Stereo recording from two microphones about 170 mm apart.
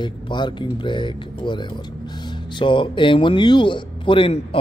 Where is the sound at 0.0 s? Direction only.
25° left (ahead or behind).